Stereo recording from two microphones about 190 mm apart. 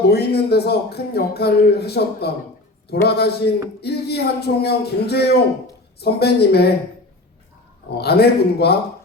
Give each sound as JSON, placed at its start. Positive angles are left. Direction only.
{"t": 0.1, "sound": "speech", "side_deg": 60}
{"t": 7.9, "sound": "speech", "side_deg": 60}